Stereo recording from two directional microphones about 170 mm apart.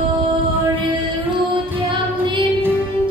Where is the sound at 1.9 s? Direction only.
30° right (ahead or behind).